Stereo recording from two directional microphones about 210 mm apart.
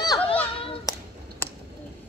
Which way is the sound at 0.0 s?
20° left (ahead or behind).